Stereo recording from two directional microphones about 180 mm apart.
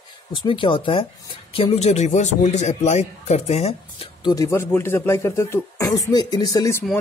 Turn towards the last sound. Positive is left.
turn(degrees=20)  # may be behind; listen again after turning